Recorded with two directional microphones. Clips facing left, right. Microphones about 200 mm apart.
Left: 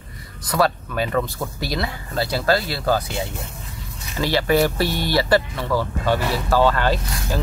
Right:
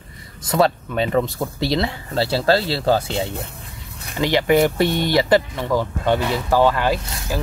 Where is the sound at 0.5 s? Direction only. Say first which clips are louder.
Right 2 dB; 25° right (ahead or behind).